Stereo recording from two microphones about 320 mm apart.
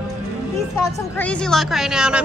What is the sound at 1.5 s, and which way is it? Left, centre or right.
Speech, centre.